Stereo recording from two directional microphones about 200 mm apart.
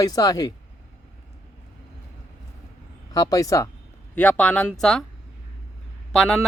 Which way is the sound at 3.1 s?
20° left (ahead or behind).